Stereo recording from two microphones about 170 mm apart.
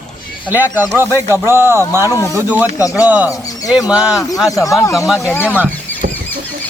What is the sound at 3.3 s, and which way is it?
Bird, 20° left (ahead or behind).